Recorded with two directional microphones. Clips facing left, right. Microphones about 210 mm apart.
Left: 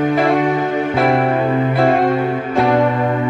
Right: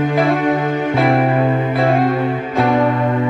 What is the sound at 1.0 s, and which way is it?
Music, centre (ahead or behind).